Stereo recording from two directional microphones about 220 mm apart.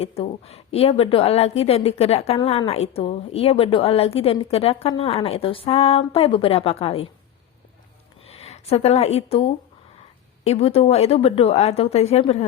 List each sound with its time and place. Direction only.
0.0 s a woman's voice: 25° left (ahead or behind)
8.4 s a woman's voice: 30° left (ahead or behind)